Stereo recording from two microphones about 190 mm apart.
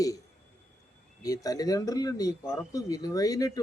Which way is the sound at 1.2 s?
20° left (ahead or behind).